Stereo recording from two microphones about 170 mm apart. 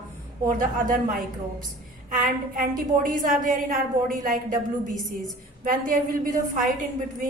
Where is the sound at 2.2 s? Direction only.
55° right (ahead or behind).